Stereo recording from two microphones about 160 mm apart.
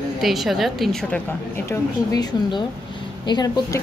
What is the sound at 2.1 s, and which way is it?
A woman's voice, 25° left (ahead or behind).